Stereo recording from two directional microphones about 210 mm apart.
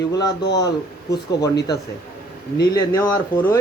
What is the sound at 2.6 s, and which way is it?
Speech, 20° left (ahead or behind).